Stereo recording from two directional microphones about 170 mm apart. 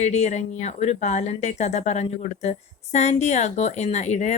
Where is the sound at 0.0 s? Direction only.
40° left (ahead or behind).